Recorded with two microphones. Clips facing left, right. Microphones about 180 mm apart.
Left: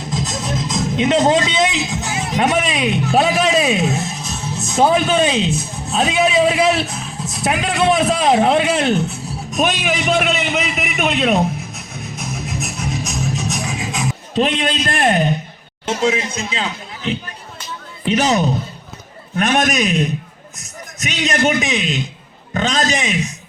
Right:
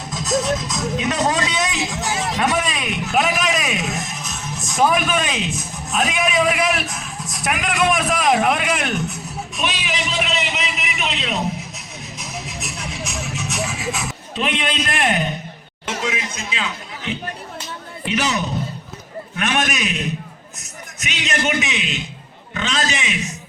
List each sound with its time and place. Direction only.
0.7 s speech: 30° left (ahead or behind)
1.9 s speech: 90° right
2.4 s a man's voice: 25° left (ahead or behind)
9.5 s a sound: 45° left (ahead or behind)
14.3 s speech: 35° left (ahead or behind)
21.0 s speech: 35° left (ahead or behind)